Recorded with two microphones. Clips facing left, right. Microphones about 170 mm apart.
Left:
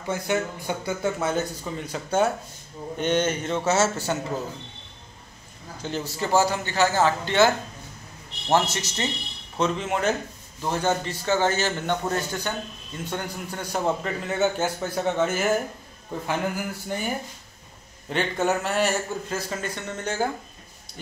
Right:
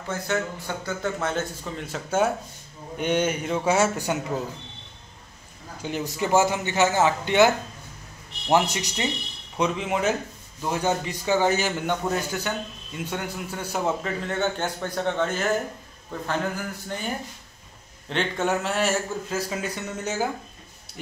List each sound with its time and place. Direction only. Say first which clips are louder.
0.1 s a man's voice: left 2 dB; 15° left (ahead or behind); by 4.4 s 15° right (ahead or behind)
5.8 s a man's voice: right 1 dB; 10° right (ahead or behind); by 15.6 s 10° left (ahead or behind)
16.3 s a sound: left 1 dB; 10° left (ahead or behind)
18.1 s a man's voice: left 1 dB; centre (ahead or behind)